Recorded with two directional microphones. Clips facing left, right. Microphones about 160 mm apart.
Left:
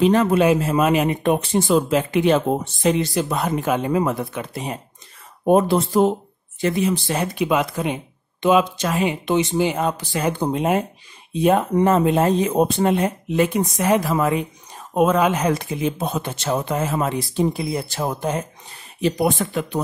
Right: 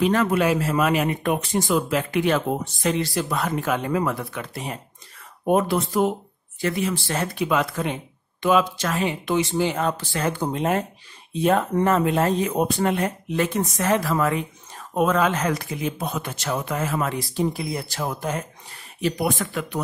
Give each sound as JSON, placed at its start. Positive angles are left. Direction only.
{"t": 0.0, "sound": "speech", "side_deg": 25}